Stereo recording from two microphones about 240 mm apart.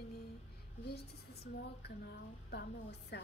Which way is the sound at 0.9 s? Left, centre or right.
Left.